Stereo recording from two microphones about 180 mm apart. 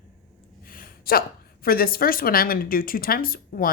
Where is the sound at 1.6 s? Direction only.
55° left (ahead or behind).